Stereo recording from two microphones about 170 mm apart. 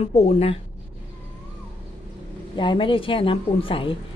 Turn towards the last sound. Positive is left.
turn(degrees=30)  # may be behind; listen again after turning